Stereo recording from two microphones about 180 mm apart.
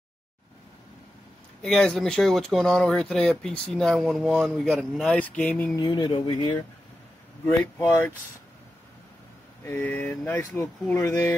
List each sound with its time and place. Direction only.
1.6 s speech: 5° left (ahead or behind)
5.8 s speech: 25° left (ahead or behind)
9.7 s speech: 10° left (ahead or behind)